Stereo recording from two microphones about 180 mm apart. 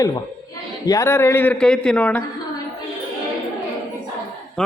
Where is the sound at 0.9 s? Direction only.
15° left (ahead or behind).